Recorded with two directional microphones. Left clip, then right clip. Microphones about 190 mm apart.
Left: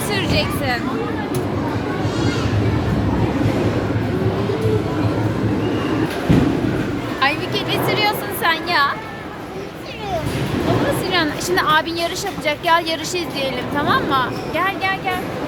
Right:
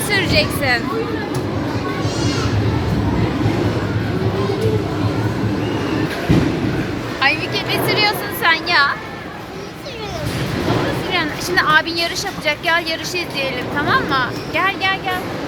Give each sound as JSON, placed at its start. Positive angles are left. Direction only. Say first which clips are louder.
{"t": 0.1, "sound": "a sound", "louder": "right 4 dB", "side_deg": -15}
{"t": 7.2, "sound": "music", "louder": "right 2 dB", "side_deg": 15}
{"t": 11.5, "sound": "speech", "louder": "right 3 dB", "side_deg": 15}